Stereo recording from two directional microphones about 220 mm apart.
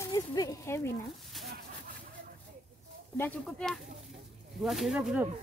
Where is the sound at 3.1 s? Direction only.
10° left (ahead or behind).